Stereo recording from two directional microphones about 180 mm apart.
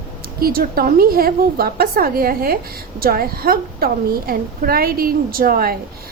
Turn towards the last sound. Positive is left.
turn(degrees=-55)  # may be behind; listen again after turning